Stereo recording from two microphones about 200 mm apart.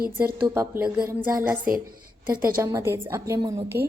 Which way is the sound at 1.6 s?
45° right (ahead or behind).